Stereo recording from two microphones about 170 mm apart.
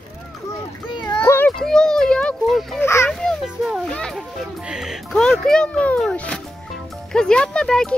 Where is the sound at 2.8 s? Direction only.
15° left (ahead or behind).